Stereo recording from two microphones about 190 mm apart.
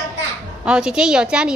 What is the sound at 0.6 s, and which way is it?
Speech, 5° right (ahead or behind).